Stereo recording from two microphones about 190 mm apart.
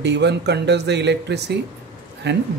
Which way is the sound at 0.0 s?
65° right (ahead or behind).